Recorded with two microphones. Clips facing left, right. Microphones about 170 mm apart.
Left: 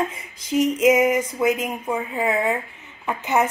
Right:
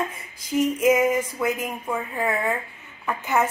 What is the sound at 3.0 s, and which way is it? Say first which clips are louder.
Speech: left 2 dB; 20° left (ahead or behind).